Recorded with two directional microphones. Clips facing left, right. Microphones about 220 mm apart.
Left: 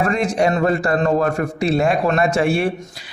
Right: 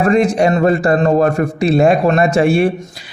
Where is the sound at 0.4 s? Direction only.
20° right (ahead or behind).